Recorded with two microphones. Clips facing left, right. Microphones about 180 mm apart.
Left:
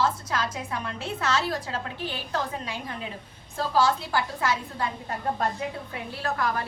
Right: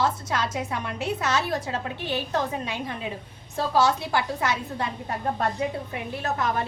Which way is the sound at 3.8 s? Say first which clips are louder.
Right 1 dB; 20° right (ahead or behind).